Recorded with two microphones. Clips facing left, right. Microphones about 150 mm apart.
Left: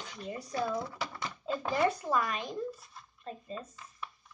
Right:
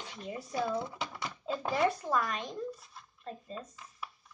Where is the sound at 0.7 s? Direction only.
20° right (ahead or behind).